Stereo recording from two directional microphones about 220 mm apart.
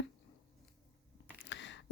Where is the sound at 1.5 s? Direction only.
55° left (ahead or behind).